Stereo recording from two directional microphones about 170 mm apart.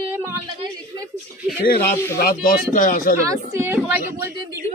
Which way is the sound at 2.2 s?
60° left (ahead or behind).